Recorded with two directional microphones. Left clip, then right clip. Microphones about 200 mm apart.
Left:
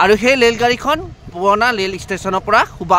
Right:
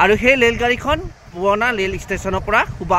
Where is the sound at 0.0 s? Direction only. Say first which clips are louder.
Left 2 dB; 20° left (ahead or behind).